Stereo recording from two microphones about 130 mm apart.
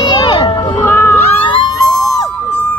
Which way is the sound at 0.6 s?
20° left (ahead or behind).